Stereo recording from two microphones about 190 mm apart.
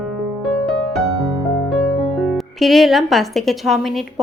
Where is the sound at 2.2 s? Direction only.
Centre (ahead or behind).